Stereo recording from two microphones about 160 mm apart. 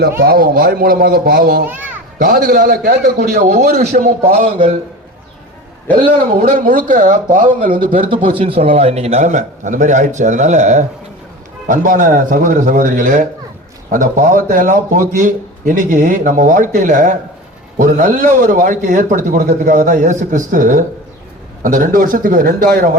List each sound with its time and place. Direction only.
0.2 s speech: 65° right (ahead or behind)
1.6 s a child's voice: 10° right (ahead or behind)
2.1 s a man's voice: 60° right (ahead or behind)
4.5 s a man's voice: 35° right (ahead or behind)
6.1 s speech: 55° right (ahead or behind)
8.1 s a man's voice: 35° right (ahead or behind); by 22.9 s 65° right (ahead or behind)